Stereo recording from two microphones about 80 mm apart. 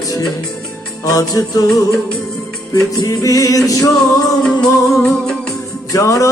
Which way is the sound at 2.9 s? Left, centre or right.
Left.